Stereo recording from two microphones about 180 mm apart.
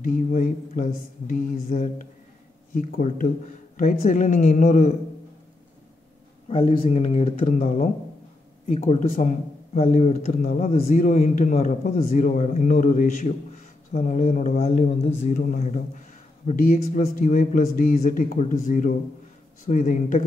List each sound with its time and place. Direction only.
0.0 s speech: 45° left (ahead or behind)
6.5 s a man's voice: 30° left (ahead or behind); by 8.9 s 45° left (ahead or behind)
8.9 s a man's voice: 35° left (ahead or behind)
14.9 s a man's voice: 35° left (ahead or behind)